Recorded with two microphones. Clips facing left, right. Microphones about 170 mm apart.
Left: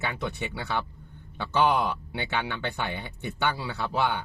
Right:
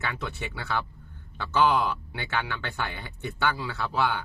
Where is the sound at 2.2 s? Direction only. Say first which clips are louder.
Left 1 dB; 20° left (ahead or behind).